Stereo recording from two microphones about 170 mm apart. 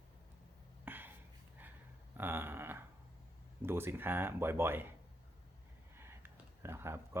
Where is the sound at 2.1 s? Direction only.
15° right (ahead or behind).